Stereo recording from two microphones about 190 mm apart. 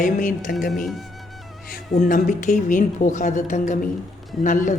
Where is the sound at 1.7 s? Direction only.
45° left (ahead or behind).